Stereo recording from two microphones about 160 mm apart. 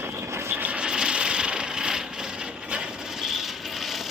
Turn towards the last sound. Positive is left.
turn(degrees=0)  # may be behind; listen again after turning